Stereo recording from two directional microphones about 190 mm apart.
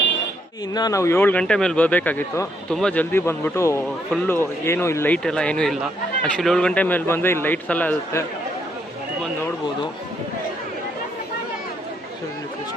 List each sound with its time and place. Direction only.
0.7 s speech: 20° left (ahead or behind)